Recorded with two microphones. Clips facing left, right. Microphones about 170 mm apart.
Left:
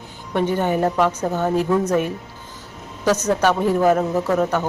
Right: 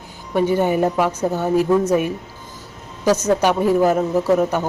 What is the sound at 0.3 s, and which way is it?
A man's voice, 10° right (ahead or behind).